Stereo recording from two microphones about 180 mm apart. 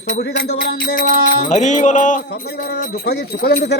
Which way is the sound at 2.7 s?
60° left (ahead or behind).